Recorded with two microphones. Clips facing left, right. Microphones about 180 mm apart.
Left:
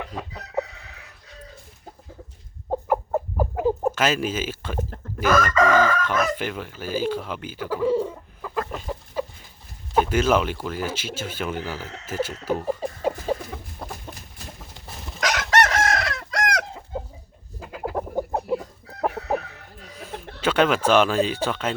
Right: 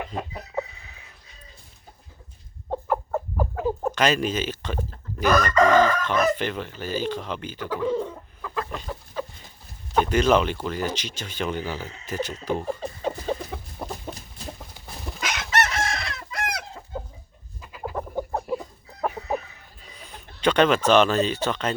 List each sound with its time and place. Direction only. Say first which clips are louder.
0.6 s chicken: left 3 dB; 70° left (ahead or behind)
2.6 s chicken: left 3 dB; 15° left (ahead or behind)
5.7 s chicken: right 1 dB; 20° right (ahead or behind)
6.0 s chicken: even; 5° left (ahead or behind)
6.3 s speech: right 1 dB; 5° left (ahead or behind)
12.0 s music: left 2 dB; 5° left (ahead or behind)
13.3 s chicken: even; 5° left (ahead or behind)
13.8 s chicken: right 3 dB; 15° right (ahead or behind)
14.8 s chicken: right 2 dB; centre (ahead or behind)
15.2 s chicken: left 5 dB; 90° left
17.6 s chicken: left 4 dB; 60° left (ahead or behind)
17.9 s chicken: left 2 dB; 15° left (ahead or behind)
19.1 s chicken: left 3 dB; 70° left (ahead or behind)
20.4 s speech: right 1 dB; 5° left (ahead or behind)